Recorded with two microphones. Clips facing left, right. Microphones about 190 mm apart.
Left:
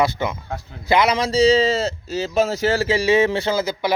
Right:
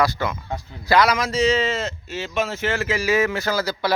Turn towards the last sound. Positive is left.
turn(degrees=20)  # may be behind; listen again after turning